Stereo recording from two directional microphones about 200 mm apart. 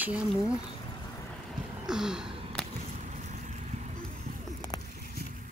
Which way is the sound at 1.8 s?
5° right (ahead or behind).